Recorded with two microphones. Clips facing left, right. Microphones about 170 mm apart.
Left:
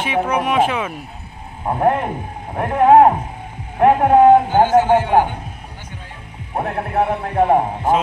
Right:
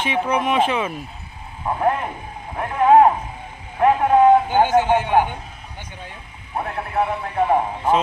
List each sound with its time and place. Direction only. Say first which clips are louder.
0.0 s speech: left 2 dB; 10° left (ahead or behind)
1.7 s a man's voice: left 4 dB; 50° left (ahead or behind)
6.5 s a man's voice: left 3 dB; 50° left (ahead or behind)